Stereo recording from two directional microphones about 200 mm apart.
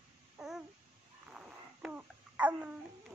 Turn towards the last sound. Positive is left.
turn(degrees=-5)  # may be behind; listen again after turning